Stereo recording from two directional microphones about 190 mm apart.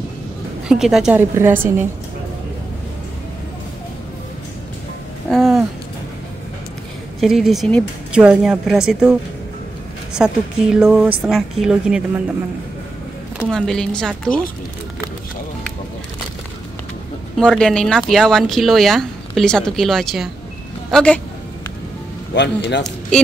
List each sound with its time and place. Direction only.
0.7 s a woman's voice: centre (ahead or behind)
5.3 s a sound: centre (ahead or behind)
7.2 s speech: centre (ahead or behind)
10.1 s speech: 5° right (ahead or behind)
13.5 s speech: 5° left (ahead or behind)
17.4 s speech: 5° left (ahead or behind)
22.3 s speech: 65° left (ahead or behind)
22.8 s a sound: 5° left (ahead or behind)